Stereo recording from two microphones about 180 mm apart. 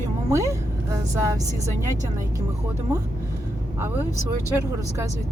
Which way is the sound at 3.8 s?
15° right (ahead or behind).